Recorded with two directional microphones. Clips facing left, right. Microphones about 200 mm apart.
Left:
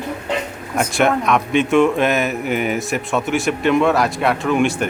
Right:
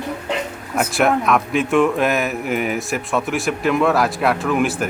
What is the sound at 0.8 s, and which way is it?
Speech, centre (ahead or behind).